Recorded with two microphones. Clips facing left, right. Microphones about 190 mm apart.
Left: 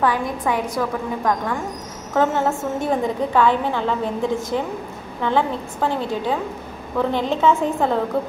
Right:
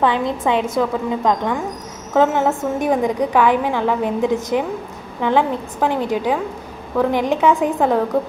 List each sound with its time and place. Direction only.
0.0 s a woman's voice: 25° right (ahead or behind)